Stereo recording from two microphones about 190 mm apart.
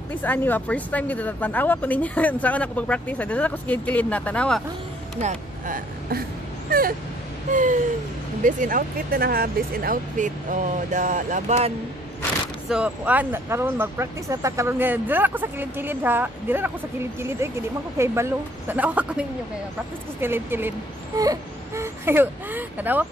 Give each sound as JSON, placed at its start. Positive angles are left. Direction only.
{"t": 0.1, "sound": "speech", "side_deg": 10}
{"t": 5.2, "sound": "speech", "side_deg": -50}
{"t": 7.5, "sound": "a sound", "side_deg": -40}
{"t": 8.5, "sound": "speech", "side_deg": -45}
{"t": 12.6, "sound": "speech", "side_deg": -5}